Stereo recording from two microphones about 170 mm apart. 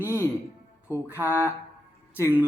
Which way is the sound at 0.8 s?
10° right (ahead or behind).